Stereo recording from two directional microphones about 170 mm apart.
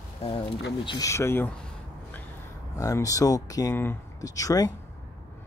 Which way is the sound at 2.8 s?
20° left (ahead or behind).